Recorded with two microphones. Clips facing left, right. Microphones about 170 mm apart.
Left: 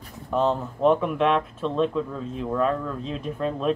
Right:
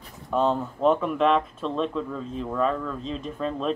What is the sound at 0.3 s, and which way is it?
A man's voice, 10° left (ahead or behind).